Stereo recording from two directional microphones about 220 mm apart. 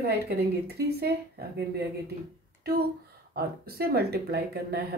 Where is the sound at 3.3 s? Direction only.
45° right (ahead or behind).